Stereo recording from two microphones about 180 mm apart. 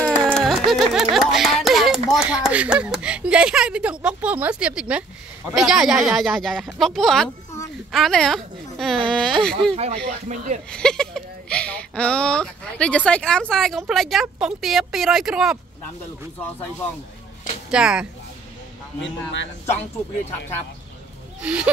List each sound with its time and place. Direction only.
0.3 s a sound: centre (ahead or behind)
1.1 s speech: centre (ahead or behind)
10.2 s speech: 40° right (ahead or behind)
10.7 s speech: 5° left (ahead or behind)
17.6 s speech: 5° right (ahead or behind)
18.9 s a man's voice: 90° left
21.4 s speech: 5° right (ahead or behind)